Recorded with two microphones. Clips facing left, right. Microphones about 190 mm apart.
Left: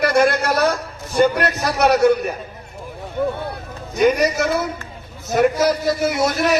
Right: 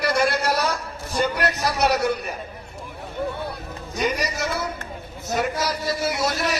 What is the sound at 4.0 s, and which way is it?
A man's voice, 55° left (ahead or behind).